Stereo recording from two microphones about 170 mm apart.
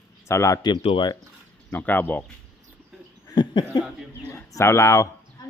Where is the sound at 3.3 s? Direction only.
25° left (ahead or behind).